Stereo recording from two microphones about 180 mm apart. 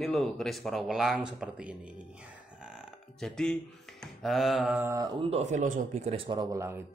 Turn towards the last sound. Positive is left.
turn(degrees=-15)  # may be behind; listen again after turning